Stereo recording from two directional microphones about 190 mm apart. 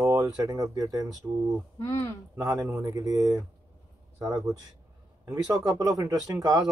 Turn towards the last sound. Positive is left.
turn(degrees=-20)  # may be behind; listen again after turning